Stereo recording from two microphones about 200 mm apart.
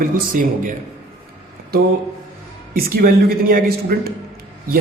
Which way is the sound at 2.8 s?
50° right (ahead or behind).